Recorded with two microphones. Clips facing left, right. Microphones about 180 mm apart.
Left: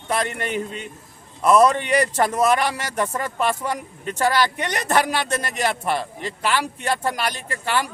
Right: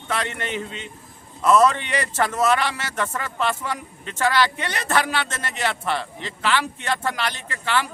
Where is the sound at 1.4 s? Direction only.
15° left (ahead or behind).